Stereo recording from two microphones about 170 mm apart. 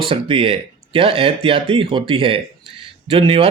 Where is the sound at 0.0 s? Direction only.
30° right (ahead or behind).